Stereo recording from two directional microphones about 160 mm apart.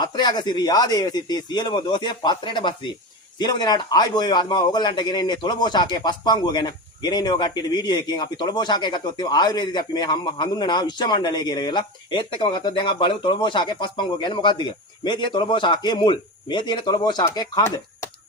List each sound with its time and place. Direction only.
0.0 s a man's voice: 25° left (ahead or behind)